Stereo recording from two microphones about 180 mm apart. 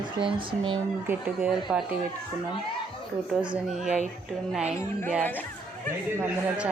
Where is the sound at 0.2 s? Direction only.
30° right (ahead or behind).